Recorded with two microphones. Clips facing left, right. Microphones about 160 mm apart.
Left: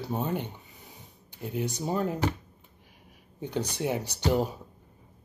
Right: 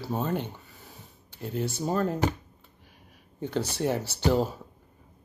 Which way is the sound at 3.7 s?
15° left (ahead or behind).